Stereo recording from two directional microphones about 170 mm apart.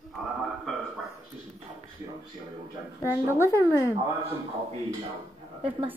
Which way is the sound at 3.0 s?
15° right (ahead or behind).